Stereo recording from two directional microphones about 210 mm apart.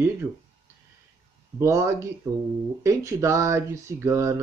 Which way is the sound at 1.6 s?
15° right (ahead or behind).